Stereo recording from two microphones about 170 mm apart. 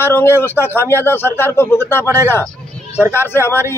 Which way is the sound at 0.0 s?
15° left (ahead or behind).